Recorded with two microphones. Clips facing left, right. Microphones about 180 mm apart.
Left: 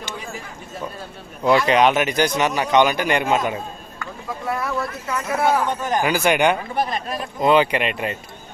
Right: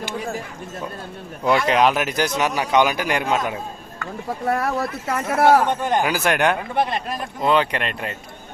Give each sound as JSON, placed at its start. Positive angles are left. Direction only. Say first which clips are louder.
{"t": 1.5, "sound": "speech", "louder": "left 2 dB", "side_deg": 0}
{"t": 4.4, "sound": "speech", "louder": "right 3 dB", "side_deg": -60}
{"t": 6.0, "sound": "speech", "louder": "left 6 dB", "side_deg": 0}